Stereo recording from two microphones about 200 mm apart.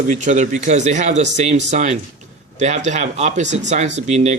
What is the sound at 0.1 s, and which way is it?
A man's voice, 40° right (ahead or behind).